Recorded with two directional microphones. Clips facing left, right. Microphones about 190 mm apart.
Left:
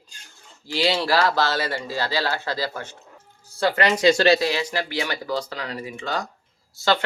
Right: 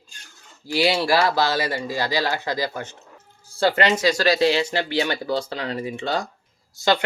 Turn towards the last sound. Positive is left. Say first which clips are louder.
# right 1 dB
turn(degrees=-15)  # may be behind; listen again after turning